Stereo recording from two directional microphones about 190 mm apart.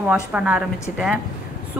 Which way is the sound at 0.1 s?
5° right (ahead or behind).